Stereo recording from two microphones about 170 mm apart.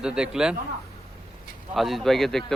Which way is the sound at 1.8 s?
Centre (ahead or behind).